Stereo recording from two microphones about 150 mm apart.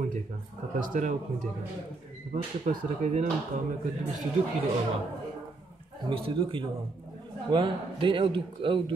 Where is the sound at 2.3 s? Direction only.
55° right (ahead or behind).